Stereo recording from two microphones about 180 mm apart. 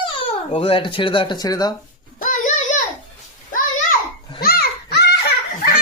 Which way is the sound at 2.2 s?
45° left (ahead or behind).